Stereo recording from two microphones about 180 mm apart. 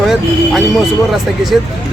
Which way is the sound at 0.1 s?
Centre (ahead or behind).